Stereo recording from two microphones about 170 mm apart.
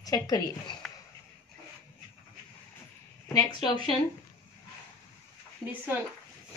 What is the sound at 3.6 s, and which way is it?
Speech, 25° left (ahead or behind).